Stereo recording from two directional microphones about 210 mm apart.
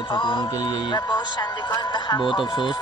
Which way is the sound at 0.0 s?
25° left (ahead or behind).